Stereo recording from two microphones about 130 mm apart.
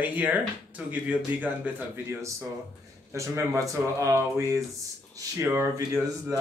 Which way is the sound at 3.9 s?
25° right (ahead or behind).